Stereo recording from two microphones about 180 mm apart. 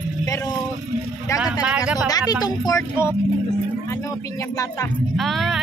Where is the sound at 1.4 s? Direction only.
5° right (ahead or behind).